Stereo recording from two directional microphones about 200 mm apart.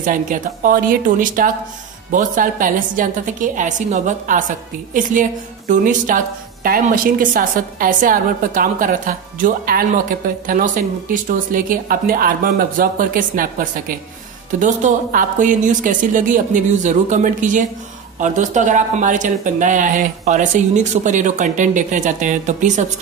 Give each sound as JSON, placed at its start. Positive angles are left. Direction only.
{"t": 0.0, "sound": "a woman's voice", "side_deg": -40}